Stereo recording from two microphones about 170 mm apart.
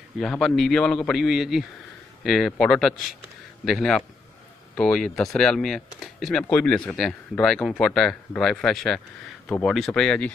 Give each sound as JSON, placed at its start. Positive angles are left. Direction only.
{"t": 0.2, "sound": "speech", "side_deg": 0}